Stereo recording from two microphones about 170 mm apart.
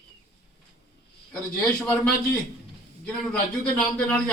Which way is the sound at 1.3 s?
5° left (ahead or behind).